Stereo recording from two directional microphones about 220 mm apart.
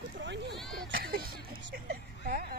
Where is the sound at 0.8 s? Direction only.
45° right (ahead or behind).